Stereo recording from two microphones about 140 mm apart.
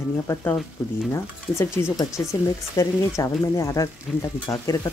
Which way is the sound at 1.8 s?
20° left (ahead or behind).